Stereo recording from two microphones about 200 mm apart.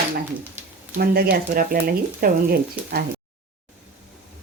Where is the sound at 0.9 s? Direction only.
50° right (ahead or behind).